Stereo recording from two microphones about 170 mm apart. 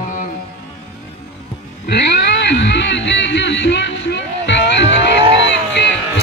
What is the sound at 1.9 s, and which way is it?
Music, 80° left.